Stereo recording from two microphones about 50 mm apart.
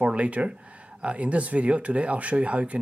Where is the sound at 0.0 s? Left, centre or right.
Right.